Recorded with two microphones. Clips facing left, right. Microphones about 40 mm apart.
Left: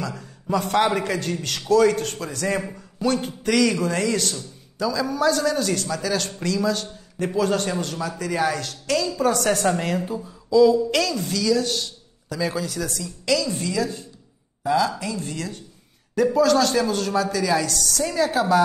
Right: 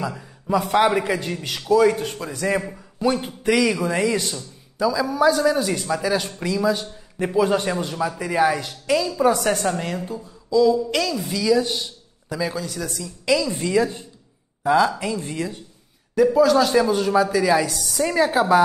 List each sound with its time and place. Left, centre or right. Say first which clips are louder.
0.0 s a man's voice: right 2 dB; centre
9.7 s speech: left 2 dB; centre
12.4 s speech: left 1 dB; centre
13.2 s speech: right 2 dB; centre
16.2 s a man's voice: right 2 dB; centre